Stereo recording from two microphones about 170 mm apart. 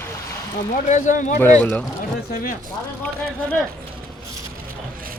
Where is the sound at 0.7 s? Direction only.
50° left (ahead or behind).